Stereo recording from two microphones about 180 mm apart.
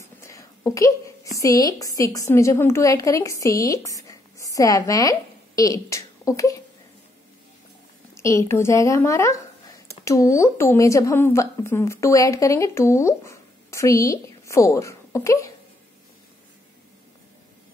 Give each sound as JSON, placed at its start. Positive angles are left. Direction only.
{"t": 0.0, "sound": "a woman's voice", "side_deg": 15}
{"t": 8.1, "sound": "a woman's voice", "side_deg": 15}